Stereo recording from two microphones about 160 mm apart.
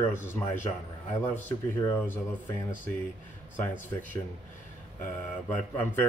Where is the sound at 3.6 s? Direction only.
10° left (ahead or behind).